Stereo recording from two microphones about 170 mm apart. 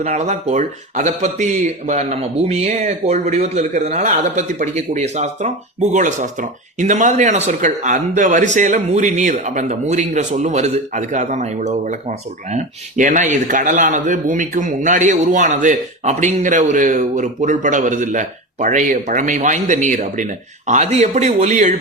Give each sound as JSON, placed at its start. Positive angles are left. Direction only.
{"t": 0.0, "sound": "speech", "side_deg": -40}